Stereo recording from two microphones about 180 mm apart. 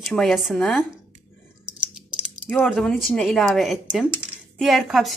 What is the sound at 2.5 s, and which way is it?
Speech, centre (ahead or behind).